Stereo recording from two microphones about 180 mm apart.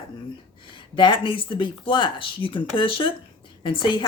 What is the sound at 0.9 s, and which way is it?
Speech, 25° left (ahead or behind).